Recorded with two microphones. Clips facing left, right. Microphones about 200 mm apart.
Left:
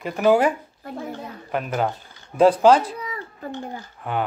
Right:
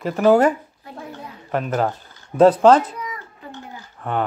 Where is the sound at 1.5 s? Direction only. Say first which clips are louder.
Right 3 dB; centre (ahead or behind).